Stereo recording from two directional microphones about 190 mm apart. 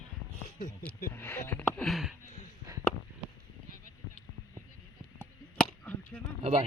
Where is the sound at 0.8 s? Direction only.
10° left (ahead or behind).